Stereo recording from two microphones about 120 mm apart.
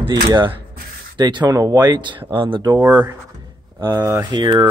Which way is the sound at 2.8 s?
25° right (ahead or behind).